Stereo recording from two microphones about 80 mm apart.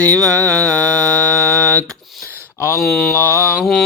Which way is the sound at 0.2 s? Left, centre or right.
Centre.